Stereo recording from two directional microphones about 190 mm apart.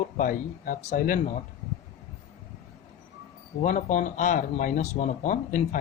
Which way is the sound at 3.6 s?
40° left (ahead or behind).